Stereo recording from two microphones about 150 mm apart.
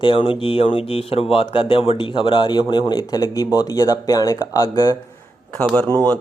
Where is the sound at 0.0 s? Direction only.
35° left (ahead or behind).